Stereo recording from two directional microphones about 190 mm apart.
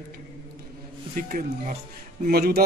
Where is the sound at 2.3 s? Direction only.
55° right (ahead or behind).